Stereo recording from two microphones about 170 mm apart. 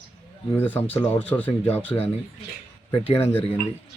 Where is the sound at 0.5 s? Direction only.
10° left (ahead or behind).